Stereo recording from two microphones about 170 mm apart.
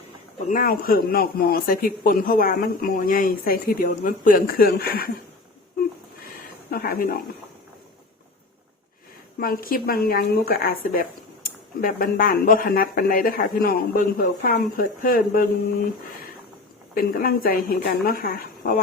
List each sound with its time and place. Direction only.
0.4 s speech: 55° left (ahead or behind)
6.2 s a sound: 60° left (ahead or behind)
9.4 s speech: 60° left (ahead or behind)
17.0 s speech: 55° left (ahead or behind)